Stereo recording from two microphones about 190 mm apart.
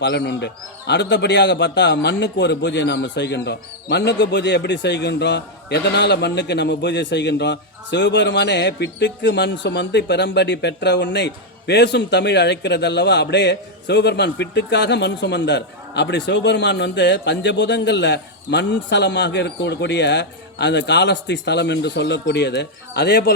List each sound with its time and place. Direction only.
0.0 s a man's voice: 65° left (ahead or behind)